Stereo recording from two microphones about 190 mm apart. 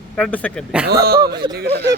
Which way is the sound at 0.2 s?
5° left (ahead or behind).